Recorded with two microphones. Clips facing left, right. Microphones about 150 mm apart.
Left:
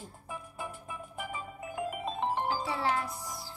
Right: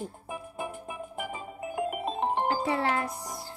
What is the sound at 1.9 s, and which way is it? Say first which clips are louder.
Music: right 1 dB; 55° right (ahead or behind).